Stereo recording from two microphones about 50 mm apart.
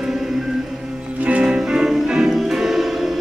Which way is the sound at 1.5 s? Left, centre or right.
Centre.